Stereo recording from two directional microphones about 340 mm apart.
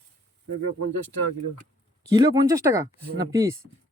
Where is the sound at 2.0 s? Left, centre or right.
Centre.